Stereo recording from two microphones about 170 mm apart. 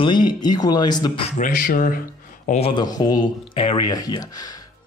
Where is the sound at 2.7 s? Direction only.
25° left (ahead or behind).